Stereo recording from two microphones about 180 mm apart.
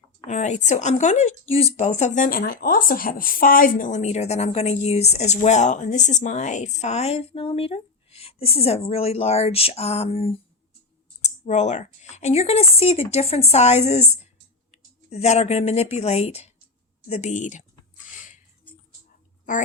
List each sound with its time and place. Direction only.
0.3 s speech: 40° left (ahead or behind)
15.1 s speech: 35° left (ahead or behind)